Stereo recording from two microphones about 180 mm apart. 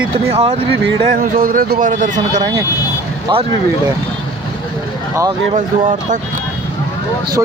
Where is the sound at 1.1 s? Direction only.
50° right (ahead or behind).